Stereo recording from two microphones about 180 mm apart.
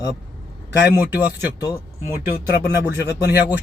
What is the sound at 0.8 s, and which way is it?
Speech, 5° right (ahead or behind).